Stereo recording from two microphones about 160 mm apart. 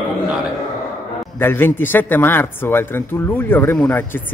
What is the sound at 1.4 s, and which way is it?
Speech, 15° left (ahead or behind).